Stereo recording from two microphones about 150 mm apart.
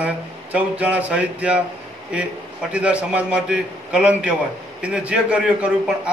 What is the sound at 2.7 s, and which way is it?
A man's voice, 10° right (ahead or behind).